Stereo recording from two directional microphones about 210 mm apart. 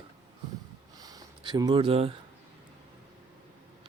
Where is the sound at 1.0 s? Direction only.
15° right (ahead or behind).